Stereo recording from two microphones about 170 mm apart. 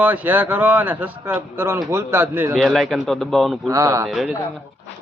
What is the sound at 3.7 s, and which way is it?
Speech, 20° right (ahead or behind).